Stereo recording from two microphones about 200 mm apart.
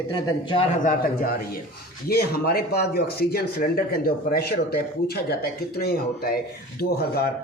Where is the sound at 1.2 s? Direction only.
50° left (ahead or behind).